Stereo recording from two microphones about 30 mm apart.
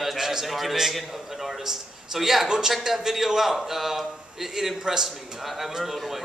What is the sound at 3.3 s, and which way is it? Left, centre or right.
A man's voice, centre.